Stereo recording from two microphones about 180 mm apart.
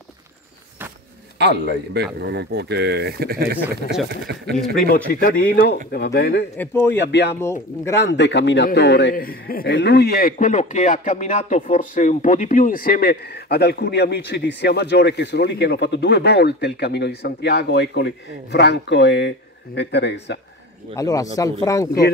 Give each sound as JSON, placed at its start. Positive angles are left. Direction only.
{"t": 1.4, "sound": "a man's voice", "side_deg": -70}
{"t": 5.4, "sound": "speech", "side_deg": 60}
{"t": 6.5, "sound": "speech", "side_deg": 15}
{"t": 7.0, "sound": "speech", "side_deg": 70}
{"t": 7.3, "sound": "speech", "side_deg": 15}
{"t": 7.9, "sound": "a man's voice", "side_deg": 75}
{"t": 20.9, "sound": "speech", "side_deg": 20}